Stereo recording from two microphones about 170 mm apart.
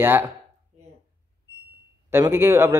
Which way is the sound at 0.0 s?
10° right (ahead or behind).